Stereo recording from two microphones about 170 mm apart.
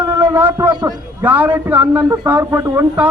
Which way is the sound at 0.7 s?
25° right (ahead or behind).